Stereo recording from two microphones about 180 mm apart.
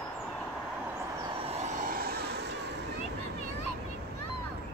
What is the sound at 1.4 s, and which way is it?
Vehicle, 35° right (ahead or behind).